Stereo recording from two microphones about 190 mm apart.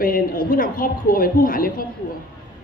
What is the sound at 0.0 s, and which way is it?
A woman's voice, 50° left (ahead or behind).